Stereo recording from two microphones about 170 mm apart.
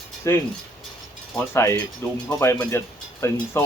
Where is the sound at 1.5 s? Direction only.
15° left (ahead or behind).